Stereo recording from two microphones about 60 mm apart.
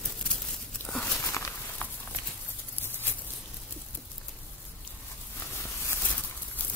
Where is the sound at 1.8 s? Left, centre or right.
Left.